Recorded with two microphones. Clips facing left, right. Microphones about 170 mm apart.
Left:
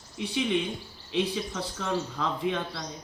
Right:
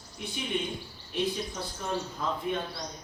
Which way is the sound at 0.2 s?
90° left.